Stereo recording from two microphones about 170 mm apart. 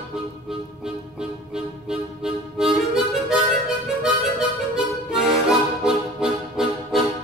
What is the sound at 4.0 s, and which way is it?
Harmonica, 5° right (ahead or behind).